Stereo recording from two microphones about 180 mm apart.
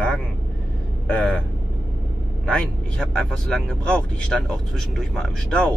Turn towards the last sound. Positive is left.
turn(degrees=5)  # may be behind; listen again after turning